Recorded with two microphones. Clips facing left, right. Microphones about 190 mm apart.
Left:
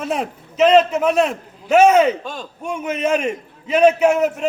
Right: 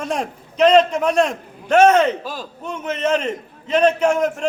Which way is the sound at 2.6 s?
10° left (ahead or behind).